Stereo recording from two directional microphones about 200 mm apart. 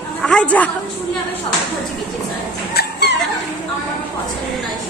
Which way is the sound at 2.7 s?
55° left (ahead or behind).